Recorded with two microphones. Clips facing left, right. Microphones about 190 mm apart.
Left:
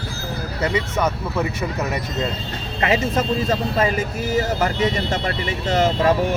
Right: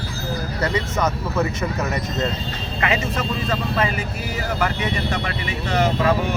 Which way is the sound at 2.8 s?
40° left (ahead or behind).